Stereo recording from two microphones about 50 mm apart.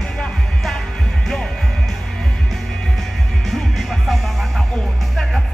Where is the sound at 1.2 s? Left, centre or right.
Centre.